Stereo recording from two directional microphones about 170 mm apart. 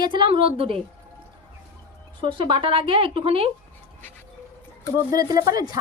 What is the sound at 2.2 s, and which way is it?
Speech, 30° right (ahead or behind).